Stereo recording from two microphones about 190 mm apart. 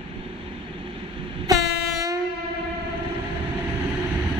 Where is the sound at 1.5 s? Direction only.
15° right (ahead or behind).